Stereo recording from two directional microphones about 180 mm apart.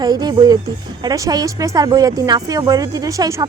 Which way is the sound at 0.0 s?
20° right (ahead or behind).